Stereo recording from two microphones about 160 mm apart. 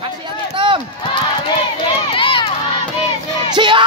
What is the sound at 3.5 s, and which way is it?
Music, 30° right (ahead or behind).